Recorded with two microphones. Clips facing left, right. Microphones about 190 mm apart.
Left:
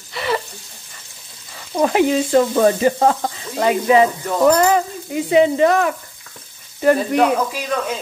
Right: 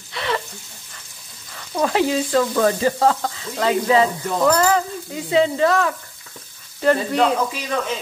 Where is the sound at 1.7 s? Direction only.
20° left (ahead or behind).